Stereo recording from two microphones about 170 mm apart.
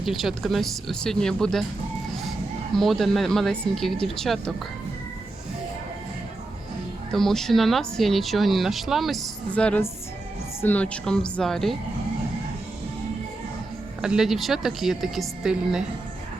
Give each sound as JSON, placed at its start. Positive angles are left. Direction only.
{"t": 0.0, "sound": "speech", "side_deg": 0}
{"t": 2.7, "sound": "speech", "side_deg": 0}
{"t": 7.1, "sound": "speech", "side_deg": 0}
{"t": 14.0, "sound": "speech", "side_deg": -5}